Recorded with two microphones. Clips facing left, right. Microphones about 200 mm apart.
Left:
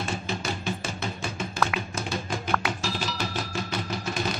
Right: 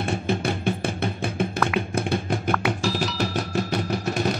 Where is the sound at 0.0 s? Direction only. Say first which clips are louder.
Right 6 dB; 55° right (ahead or behind).